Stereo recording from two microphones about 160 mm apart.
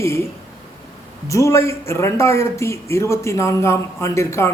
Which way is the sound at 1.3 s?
20° left (ahead or behind).